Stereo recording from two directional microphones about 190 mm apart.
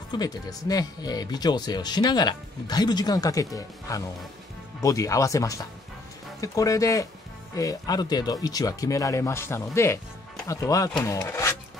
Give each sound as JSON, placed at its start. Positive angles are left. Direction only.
{"t": 0.1, "sound": "speech", "side_deg": 20}